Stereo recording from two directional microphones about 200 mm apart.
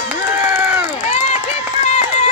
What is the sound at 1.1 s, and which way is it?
Run, 35° left (ahead or behind).